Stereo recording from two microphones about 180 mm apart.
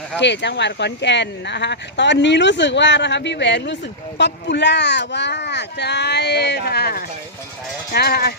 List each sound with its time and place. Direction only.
0.2 s speech: 75° left (ahead or behind); by 8.3 s 60° left (ahead or behind)